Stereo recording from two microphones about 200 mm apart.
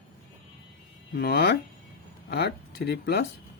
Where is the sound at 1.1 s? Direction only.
50° left (ahead or behind).